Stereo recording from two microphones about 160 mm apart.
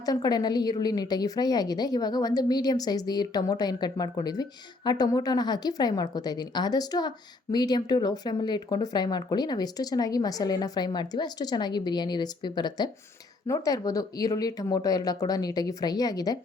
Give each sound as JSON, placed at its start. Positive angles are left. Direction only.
{"t": 0.0, "sound": "speech", "side_deg": 25}